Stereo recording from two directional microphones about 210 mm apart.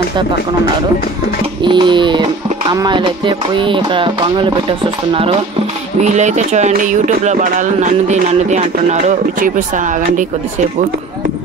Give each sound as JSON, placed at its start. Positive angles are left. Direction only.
{"t": 1.6, "sound": "music", "side_deg": -20}
{"t": 6.0, "sound": "speech", "side_deg": -35}